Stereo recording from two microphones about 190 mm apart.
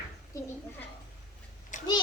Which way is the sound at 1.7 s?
40° left (ahead or behind).